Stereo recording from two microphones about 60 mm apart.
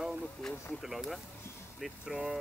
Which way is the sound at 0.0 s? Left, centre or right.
Centre.